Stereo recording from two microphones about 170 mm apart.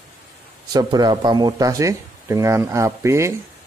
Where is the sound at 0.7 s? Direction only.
25° right (ahead or behind).